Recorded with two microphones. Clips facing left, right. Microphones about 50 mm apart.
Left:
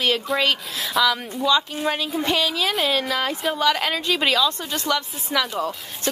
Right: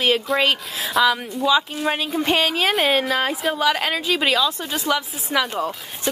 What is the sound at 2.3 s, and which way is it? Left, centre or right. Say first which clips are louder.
Speech: right 3 dB; right.